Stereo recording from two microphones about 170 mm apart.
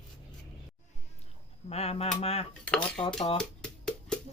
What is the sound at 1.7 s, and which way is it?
Speech, 35° left (ahead or behind).